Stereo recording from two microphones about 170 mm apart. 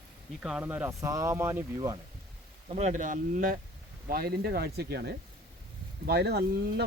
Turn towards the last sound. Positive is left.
turn(degrees=-70)  # may be behind; listen again after turning